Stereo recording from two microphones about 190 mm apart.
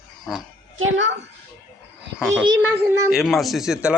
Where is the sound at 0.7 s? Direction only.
85° right.